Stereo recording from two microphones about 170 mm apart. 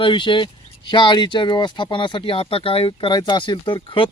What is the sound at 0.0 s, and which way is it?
Speech, 30° left (ahead or behind).